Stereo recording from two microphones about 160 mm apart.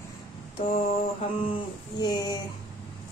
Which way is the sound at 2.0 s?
25° left (ahead or behind).